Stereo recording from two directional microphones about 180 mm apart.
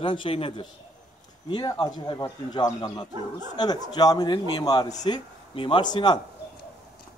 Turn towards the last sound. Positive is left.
turn(degrees=25)  # may be behind; listen again after turning